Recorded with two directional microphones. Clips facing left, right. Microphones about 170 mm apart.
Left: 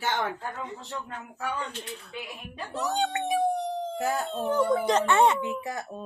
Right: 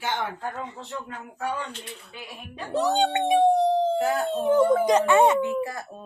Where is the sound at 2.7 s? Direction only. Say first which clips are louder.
Right 6 dB; 35° right (ahead or behind).